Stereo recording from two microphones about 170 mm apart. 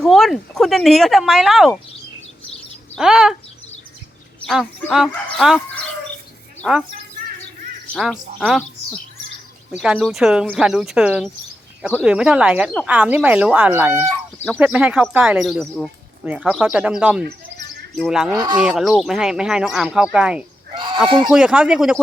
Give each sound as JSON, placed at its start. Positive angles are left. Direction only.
{"t": 0.0, "sound": "speech", "side_deg": 0}
{"t": 3.0, "sound": "speech", "side_deg": -5}
{"t": 4.4, "sound": "speech", "side_deg": 0}
{"t": 7.9, "sound": "speech", "side_deg": 0}
{"t": 9.8, "sound": "speech", "side_deg": -5}
{"t": 20.7, "sound": "a sound", "side_deg": -30}
{"t": 21.2, "sound": "speech", "side_deg": -5}